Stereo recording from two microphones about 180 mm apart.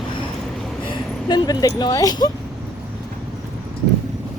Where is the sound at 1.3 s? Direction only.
20° left (ahead or behind).